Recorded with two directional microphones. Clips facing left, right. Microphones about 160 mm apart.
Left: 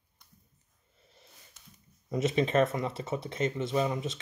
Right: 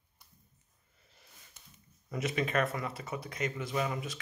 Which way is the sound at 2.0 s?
20° left (ahead or behind).